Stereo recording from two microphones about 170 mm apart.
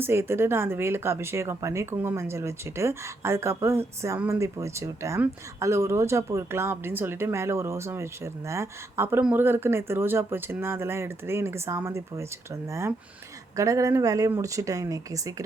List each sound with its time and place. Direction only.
0.0 s speech: 15° right (ahead or behind)
13.6 s speech: 20° right (ahead or behind)